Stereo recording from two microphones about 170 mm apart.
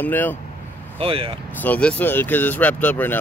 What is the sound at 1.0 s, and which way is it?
Speech, 35° right (ahead or behind).